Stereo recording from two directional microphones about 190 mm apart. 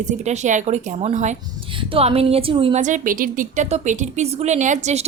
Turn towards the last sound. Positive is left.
turn(degrees=-40)  # may be behind; listen again after turning